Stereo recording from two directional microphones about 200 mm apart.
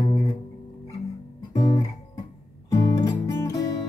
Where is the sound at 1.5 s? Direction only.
20° left (ahead or behind).